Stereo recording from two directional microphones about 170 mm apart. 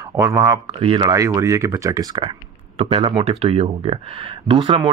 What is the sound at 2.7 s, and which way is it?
Speech, 35° right (ahead or behind).